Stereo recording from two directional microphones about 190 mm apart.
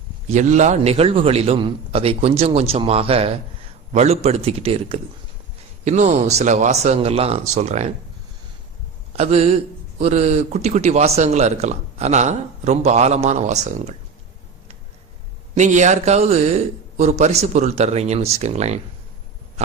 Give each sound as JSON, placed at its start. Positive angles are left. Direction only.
{"t": 0.3, "sound": "speech", "side_deg": -40}
{"t": 9.1, "sound": "speech", "side_deg": -35}
{"t": 15.5, "sound": "speech", "side_deg": -40}